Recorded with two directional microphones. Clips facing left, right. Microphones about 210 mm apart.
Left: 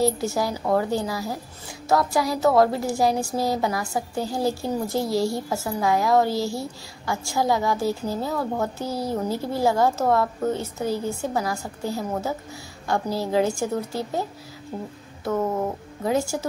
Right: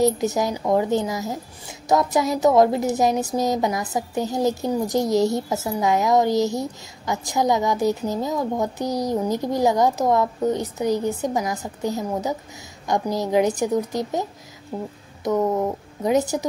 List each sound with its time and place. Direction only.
0.0 s a woman's voice: 20° right (ahead or behind)
15.2 s a woman's voice: 15° right (ahead or behind)